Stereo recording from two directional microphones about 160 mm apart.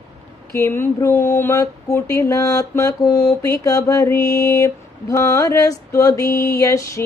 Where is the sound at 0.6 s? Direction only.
15° left (ahead or behind).